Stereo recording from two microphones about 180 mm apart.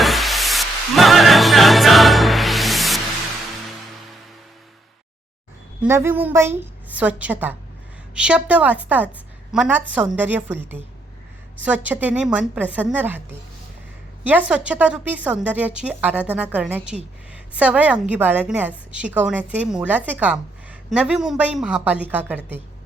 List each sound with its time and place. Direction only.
0.0 s music: centre (ahead or behind)
5.8 s a woman's voice: 10° right (ahead or behind)
14.3 s a woman's voice: 10° right (ahead or behind)